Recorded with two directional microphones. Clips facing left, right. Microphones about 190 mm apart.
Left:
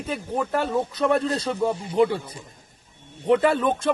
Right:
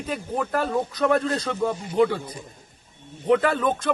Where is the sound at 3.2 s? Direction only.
Centre (ahead or behind).